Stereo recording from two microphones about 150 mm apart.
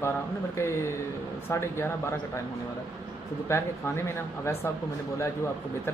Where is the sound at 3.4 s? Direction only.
15° left (ahead or behind).